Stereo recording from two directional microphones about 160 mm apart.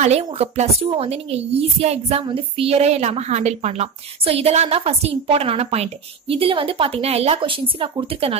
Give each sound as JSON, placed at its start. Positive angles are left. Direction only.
{"t": 0.0, "sound": "a woman's voice", "side_deg": -40}